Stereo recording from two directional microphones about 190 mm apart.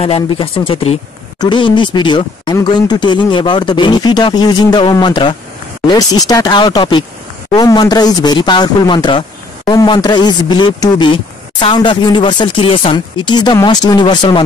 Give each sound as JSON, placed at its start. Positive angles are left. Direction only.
{"t": 0.0, "sound": "speech", "side_deg": 30}